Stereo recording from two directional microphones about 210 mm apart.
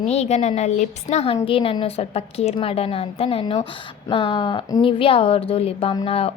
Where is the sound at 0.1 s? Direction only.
30° left (ahead or behind).